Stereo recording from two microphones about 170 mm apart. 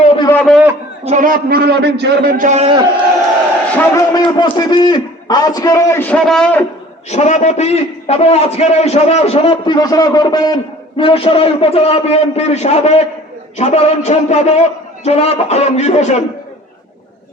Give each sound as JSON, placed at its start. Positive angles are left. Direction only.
{"t": 0.0, "sound": "a sound", "side_deg": 35}
{"t": 0.3, "sound": "a sound", "side_deg": 0}
{"t": 1.0, "sound": "a man's voice", "side_deg": -45}
{"t": 2.4, "sound": "a man's voice", "side_deg": -45}
{"t": 3.8, "sound": "a man's voice", "side_deg": 20}
{"t": 7.1, "sound": "a man's voice", "side_deg": 40}